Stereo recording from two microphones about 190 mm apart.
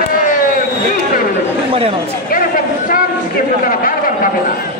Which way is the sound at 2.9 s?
45° left (ahead or behind).